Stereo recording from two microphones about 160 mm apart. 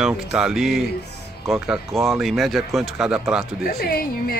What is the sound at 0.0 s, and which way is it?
Speech, 5° right (ahead or behind).